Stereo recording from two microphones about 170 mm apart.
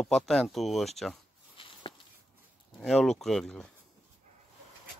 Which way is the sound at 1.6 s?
30° left (ahead or behind).